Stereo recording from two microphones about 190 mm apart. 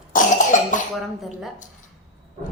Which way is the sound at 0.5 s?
40° left (ahead or behind).